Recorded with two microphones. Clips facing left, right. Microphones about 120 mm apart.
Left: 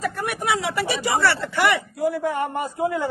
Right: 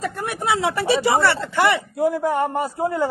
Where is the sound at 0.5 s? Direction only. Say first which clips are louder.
Right 5 dB; 20° right (ahead or behind).